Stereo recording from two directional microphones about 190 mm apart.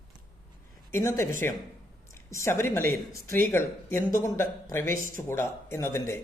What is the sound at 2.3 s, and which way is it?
Speech, 15° left (ahead or behind).